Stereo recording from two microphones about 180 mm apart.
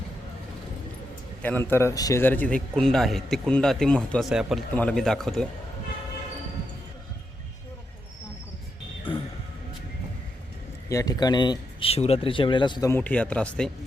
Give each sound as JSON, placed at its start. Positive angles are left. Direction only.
{"t": 1.4, "sound": "a man's voice", "side_deg": 10}
{"t": 10.8, "sound": "speech", "side_deg": 20}
{"t": 12.9, "sound": "speech", "side_deg": 10}